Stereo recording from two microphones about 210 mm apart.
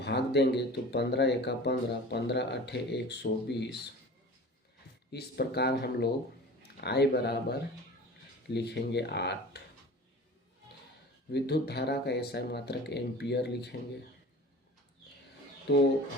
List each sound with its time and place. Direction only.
0.0 s speech: 55° left (ahead or behind)
5.1 s speech: 50° left (ahead or behind)
11.3 s speech: 50° left (ahead or behind)
15.7 s speech: 55° left (ahead or behind)